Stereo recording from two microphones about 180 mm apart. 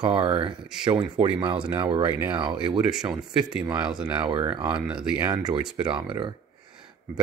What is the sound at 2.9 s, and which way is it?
Speech, 5° right (ahead or behind).